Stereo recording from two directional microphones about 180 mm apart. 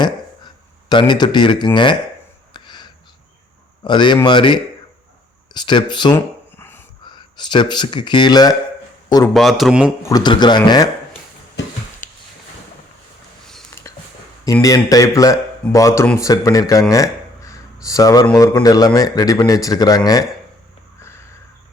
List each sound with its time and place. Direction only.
0.0 s speech: 25° left (ahead or behind)
2.5 s a sound: 25° left (ahead or behind)
3.8 s speech: 25° left (ahead or behind)
6.1 s a sound: 10° left (ahead or behind)
7.0 s speech: 25° left (ahead or behind)
9.3 s speech: centre (ahead or behind)
10.1 s speech: 20° left (ahead or behind)
14.4 s speech: 20° left (ahead or behind)
16.9 s a sound: 20° left (ahead or behind)
18.3 s speech: 20° left (ahead or behind)